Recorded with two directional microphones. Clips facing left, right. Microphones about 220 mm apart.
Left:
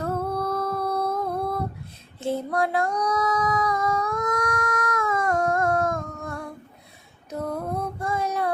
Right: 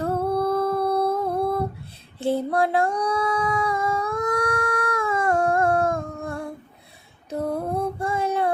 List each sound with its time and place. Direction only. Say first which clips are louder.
0.0 s humming: right 4 dB; 30° right (ahead or behind)
2.1 s female singing: right 3 dB; 35° right (ahead or behind)